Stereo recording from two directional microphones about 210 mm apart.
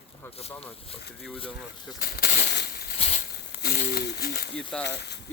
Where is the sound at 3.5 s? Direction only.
45° left (ahead or behind).